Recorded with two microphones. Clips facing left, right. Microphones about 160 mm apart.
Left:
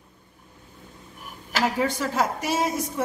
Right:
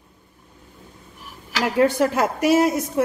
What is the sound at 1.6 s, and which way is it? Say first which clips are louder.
A woman's voice: right 6 dB; 60° right (ahead or behind).